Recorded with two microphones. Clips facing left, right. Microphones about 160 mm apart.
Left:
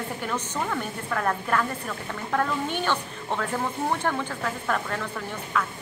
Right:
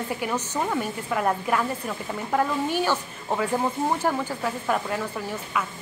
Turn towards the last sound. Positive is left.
turn(degrees=-10)  # may be behind; listen again after turning